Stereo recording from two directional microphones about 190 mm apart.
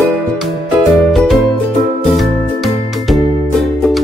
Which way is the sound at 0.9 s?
Centre (ahead or behind).